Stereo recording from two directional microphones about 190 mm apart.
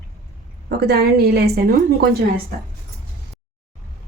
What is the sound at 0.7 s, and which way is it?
Speech, 55° right (ahead or behind).